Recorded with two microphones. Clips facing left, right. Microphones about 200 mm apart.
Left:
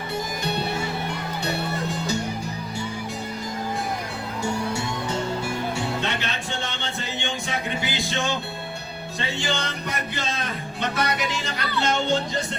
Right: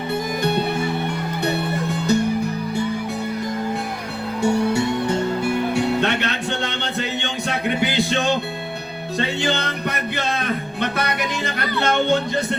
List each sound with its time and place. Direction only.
1.5 s music: 55° right (ahead or behind)
4.4 s music: 60° right (ahead or behind)